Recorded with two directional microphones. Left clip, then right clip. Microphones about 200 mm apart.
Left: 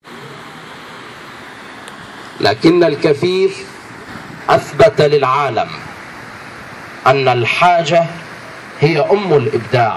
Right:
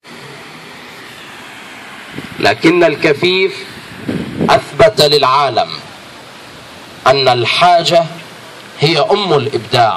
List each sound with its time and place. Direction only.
2.4 s a man's voice: 20° right (ahead or behind)
4.5 s a man's voice: 40° right (ahead or behind)
7.0 s a man's voice: 30° right (ahead or behind)